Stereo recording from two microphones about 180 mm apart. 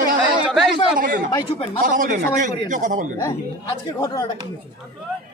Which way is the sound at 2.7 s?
45° right (ahead or behind).